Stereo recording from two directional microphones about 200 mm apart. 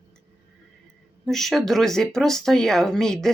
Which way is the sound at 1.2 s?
Centre (ahead or behind).